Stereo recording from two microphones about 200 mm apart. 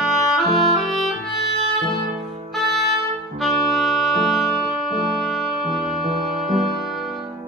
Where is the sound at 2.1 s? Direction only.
Centre (ahead or behind).